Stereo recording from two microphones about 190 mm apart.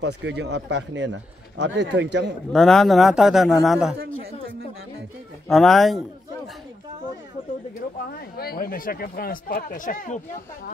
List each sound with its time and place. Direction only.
0.0 s speech: 65° right (ahead or behind)
2.5 s a man's voice: centre (ahead or behind)
5.5 s a man's voice: centre (ahead or behind)
8.1 s speech: 55° left (ahead or behind)